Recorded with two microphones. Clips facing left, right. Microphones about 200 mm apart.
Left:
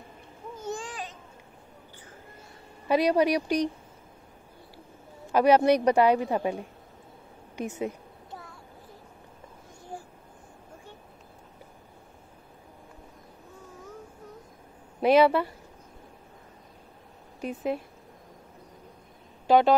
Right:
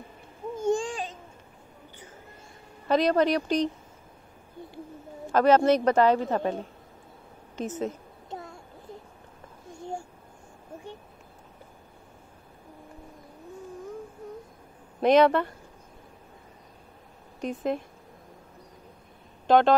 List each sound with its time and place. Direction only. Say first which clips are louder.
0.7 s babbling: right 9 dB; 30° right (ahead or behind)
2.9 s speech: even; 10° left (ahead or behind)
5.3 s speech: even; 15° left (ahead or behind)
8.3 s a sound: right 6 dB; 25° right (ahead or behind)
15.0 s speech: right 1 dB; 5° left (ahead or behind)
17.4 s speech: right 1 dB; 10° left (ahead or behind)
19.4 s a sound: even; 10° left (ahead or behind)